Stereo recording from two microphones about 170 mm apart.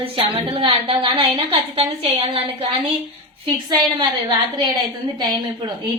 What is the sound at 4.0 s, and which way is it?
A woman's voice, 25° right (ahead or behind).